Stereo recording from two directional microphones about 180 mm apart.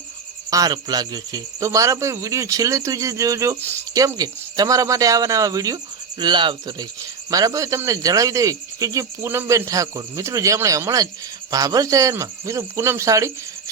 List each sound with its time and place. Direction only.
0.5 s speech: 20° right (ahead or behind)